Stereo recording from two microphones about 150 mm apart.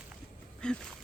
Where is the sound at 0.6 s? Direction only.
5° left (ahead or behind).